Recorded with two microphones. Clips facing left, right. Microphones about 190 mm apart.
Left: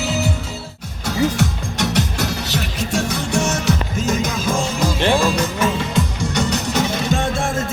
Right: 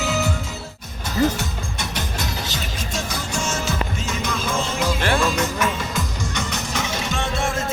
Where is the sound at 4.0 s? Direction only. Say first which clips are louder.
Left 6 dB; 40° left (ahead or behind).